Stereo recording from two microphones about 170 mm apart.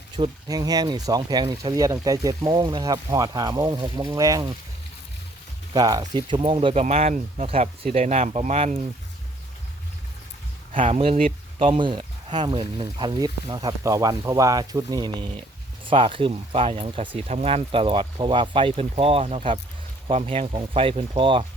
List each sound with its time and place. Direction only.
0.2 s speech: 20° right (ahead or behind)
5.7 s speech: 20° right (ahead or behind)
6.8 s speech: 40° right (ahead or behind)
10.8 s speech: 35° right (ahead or behind)